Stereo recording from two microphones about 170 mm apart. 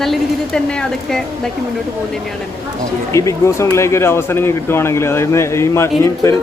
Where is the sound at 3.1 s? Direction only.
15° left (ahead or behind).